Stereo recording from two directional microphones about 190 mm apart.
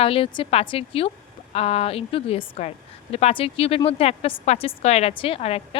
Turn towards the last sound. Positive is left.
turn(degrees=30)  # may be behind; listen again after turning